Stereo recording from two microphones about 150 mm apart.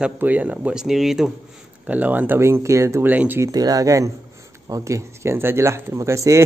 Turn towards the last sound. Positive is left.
turn(degrees=-20)  # may be behind; listen again after turning